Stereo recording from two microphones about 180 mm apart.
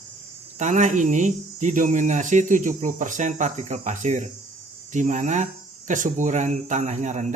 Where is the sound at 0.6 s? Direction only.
40° right (ahead or behind).